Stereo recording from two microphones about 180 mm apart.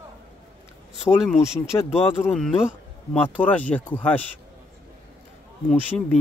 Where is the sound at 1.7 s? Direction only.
20° left (ahead or behind).